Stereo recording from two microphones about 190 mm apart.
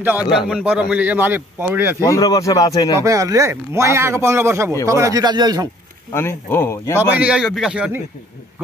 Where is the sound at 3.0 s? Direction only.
15° right (ahead or behind).